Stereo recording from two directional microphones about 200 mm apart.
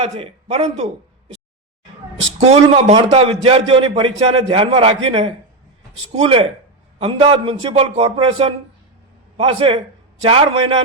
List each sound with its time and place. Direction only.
0.0 s a man's voice: 30° right (ahead or behind)
2.4 s a man's voice: 30° right (ahead or behind)